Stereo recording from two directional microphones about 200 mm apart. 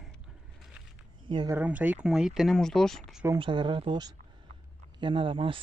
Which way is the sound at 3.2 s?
20° right (ahead or behind).